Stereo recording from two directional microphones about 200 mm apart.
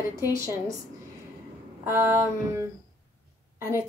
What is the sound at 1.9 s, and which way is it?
Speech, 10° right (ahead or behind).